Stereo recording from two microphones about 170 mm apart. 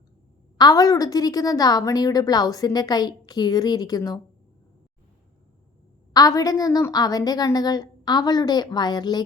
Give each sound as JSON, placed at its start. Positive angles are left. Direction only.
{"t": 0.6, "sound": "a woman's voice", "side_deg": 20}
{"t": 6.1, "sound": "a woman's voice", "side_deg": 20}